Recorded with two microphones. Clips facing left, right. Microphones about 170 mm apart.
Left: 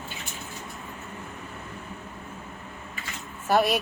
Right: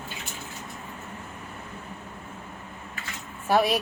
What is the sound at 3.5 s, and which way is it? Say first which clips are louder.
Speech: even; centre (ahead or behind).